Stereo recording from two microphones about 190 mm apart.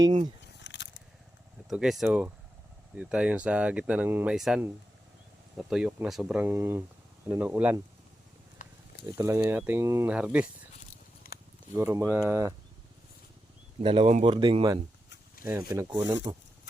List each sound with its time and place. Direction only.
0.0 s speech: 25° right (ahead or behind)
0.4 s biting: 65° left (ahead or behind)
1.7 s speech: 5° right (ahead or behind)
8.6 s a sound: 45° left (ahead or behind)
9.0 s speech: 15° right (ahead or behind)
10.8 s a sound: 45° left (ahead or behind)
11.7 s speech: 15° right (ahead or behind)
13.8 s speech: 30° right (ahead or behind)